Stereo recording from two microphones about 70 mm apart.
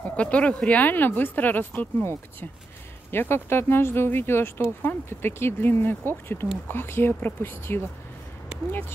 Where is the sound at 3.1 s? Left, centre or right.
Left.